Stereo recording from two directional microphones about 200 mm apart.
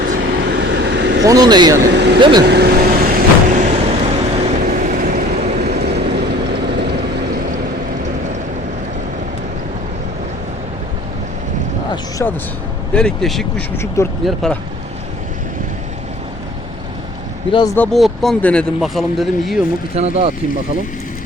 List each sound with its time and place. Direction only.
0.2 s vehicle: 60° right (ahead or behind)
1.2 s speech: 20° right (ahead or behind)
1.9 s speech: 55° right (ahead or behind)
2.1 s speech: 25° right (ahead or behind)
2.4 s speech: 55° right (ahead or behind)
3.1 s vehicle: 40° right (ahead or behind)
5.8 s vehicle: 55° right (ahead or behind)
12.2 s speech: 5° left (ahead or behind)
13.7 s speech: 15° left (ahead or behind)
14.3 s speech: centre (ahead or behind)
17.5 s speech: 20° left (ahead or behind)
17.7 s speech: centre (ahead or behind)
20.0 s speech: 30° right (ahead or behind)